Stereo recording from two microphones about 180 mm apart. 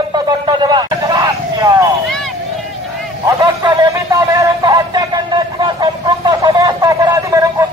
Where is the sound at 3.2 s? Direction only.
25° right (ahead or behind).